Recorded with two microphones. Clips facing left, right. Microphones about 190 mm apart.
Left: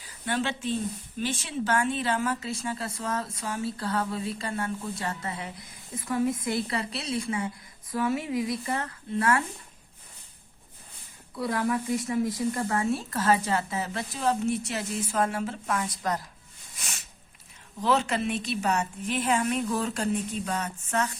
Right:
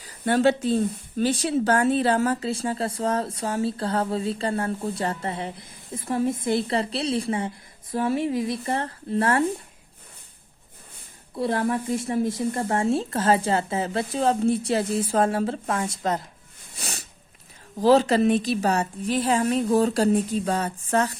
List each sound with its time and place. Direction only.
0.3 s speech: 40° right (ahead or behind)
11.3 s speech: 30° right (ahead or behind)
16.7 s sniff: 35° right (ahead or behind)
17.7 s speech: 35° right (ahead or behind)